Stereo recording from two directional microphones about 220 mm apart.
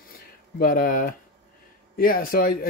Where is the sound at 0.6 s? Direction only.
40° left (ahead or behind).